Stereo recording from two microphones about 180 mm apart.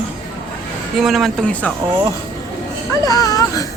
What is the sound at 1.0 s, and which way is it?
Speech, centre (ahead or behind).